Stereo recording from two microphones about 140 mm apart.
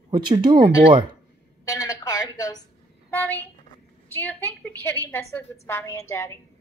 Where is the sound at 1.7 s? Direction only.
25° left (ahead or behind).